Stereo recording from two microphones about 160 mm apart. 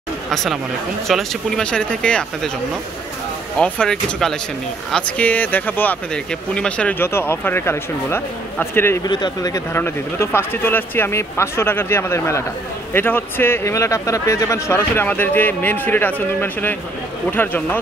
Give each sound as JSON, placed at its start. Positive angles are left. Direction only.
{"t": 0.3, "sound": "speech", "side_deg": 0}
{"t": 3.5, "sound": "speech", "side_deg": 5}